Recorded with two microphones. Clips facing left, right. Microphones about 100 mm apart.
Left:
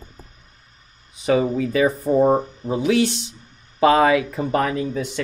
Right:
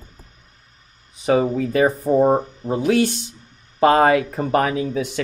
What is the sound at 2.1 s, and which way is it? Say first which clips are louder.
Speech: even; 25° right (ahead or behind).